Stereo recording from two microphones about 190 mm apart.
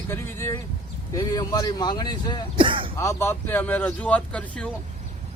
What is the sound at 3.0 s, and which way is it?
Speech, 15° left (ahead or behind).